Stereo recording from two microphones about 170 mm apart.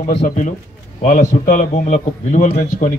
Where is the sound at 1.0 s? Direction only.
45° left (ahead or behind).